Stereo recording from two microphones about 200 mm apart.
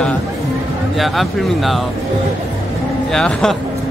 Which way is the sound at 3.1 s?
5° left (ahead or behind).